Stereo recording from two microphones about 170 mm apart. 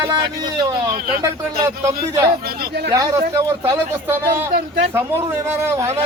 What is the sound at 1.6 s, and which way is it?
Speech, 20° right (ahead or behind).